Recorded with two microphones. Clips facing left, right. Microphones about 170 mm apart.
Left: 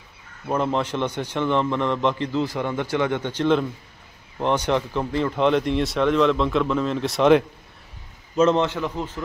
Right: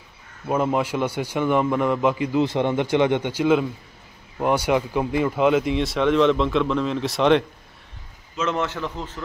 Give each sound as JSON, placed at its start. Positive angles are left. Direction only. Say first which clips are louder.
{"t": 0.5, "sound": "a man's voice", "louder": "right 1 dB", "side_deg": -10}
{"t": 2.4, "sound": "a man's voice", "louder": "right 4 dB", "side_deg": -25}
{"t": 8.7, "sound": "a man's voice", "louder": "left 3 dB", "side_deg": 10}